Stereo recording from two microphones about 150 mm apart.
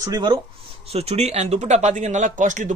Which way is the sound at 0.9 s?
45° right (ahead or behind).